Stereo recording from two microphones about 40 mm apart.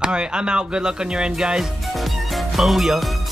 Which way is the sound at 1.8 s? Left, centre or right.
Centre.